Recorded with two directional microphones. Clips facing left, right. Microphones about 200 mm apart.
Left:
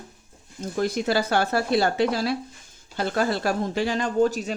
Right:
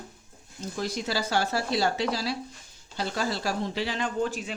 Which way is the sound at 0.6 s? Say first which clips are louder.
Left 6 dB; 55° left (ahead or behind).